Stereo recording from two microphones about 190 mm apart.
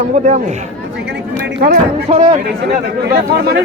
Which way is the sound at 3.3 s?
55° right (ahead or behind).